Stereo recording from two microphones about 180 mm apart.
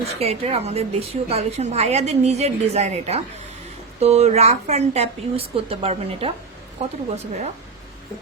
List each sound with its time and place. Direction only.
0.0 s a woman's voice: 35° right (ahead or behind)